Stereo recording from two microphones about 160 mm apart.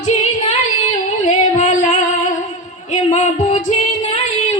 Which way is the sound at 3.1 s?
45° left (ahead or behind).